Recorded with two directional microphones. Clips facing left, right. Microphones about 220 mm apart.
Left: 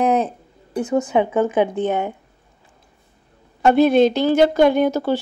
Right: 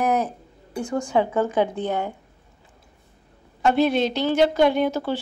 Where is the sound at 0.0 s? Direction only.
25° left (ahead or behind).